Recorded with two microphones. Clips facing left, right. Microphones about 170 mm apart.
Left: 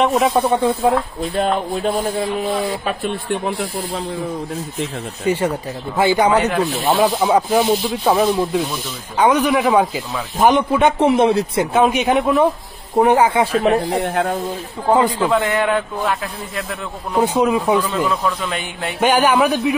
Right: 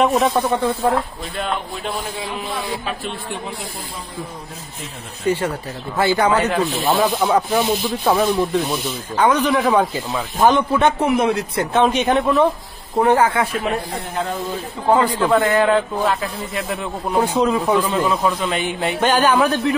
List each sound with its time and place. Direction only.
0.0 s a man's voice: centre (ahead or behind)
0.3 s speech: 20° left (ahead or behind)
1.3 s speech: 40° left (ahead or behind)
5.2 s speech: 15° left (ahead or behind)
11.0 s speech: 25° left (ahead or behind)
11.6 s speech: 10° left (ahead or behind)
13.9 s speech: 75° left (ahead or behind)
15.2 s a man's voice: 5° left (ahead or behind)
17.2 s speech: 15° left (ahead or behind)
17.7 s speech: 10° right (ahead or behind)
18.9 s speech: 15° left (ahead or behind)